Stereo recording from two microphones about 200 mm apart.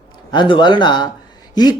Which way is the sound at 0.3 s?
25° left (ahead or behind).